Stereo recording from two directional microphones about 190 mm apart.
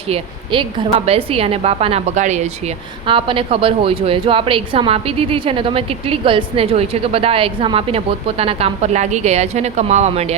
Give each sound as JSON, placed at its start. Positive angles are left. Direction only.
{"t": 0.1, "sound": "a woman's voice", "side_deg": -25}
{"t": 3.1, "sound": "a woman's voice", "side_deg": -25}